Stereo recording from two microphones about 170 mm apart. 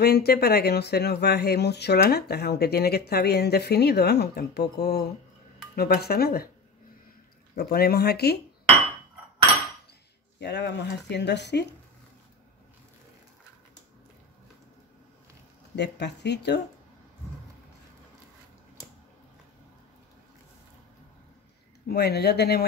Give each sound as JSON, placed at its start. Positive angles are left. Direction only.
{"t": 0.0, "sound": "speech", "side_deg": 65}
{"t": 7.5, "sound": "speech", "side_deg": 65}
{"t": 10.4, "sound": "speech", "side_deg": 80}
{"t": 15.7, "sound": "speech", "side_deg": 85}
{"t": 21.8, "sound": "speech", "side_deg": 75}